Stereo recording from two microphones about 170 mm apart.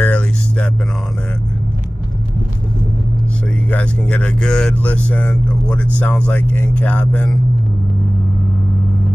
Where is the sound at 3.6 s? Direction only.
10° left (ahead or behind).